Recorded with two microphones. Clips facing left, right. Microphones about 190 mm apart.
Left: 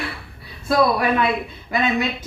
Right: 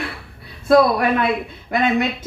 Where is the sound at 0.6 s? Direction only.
55° right (ahead or behind).